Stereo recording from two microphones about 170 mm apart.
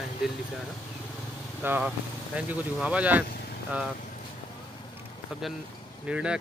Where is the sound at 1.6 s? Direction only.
10° right (ahead or behind).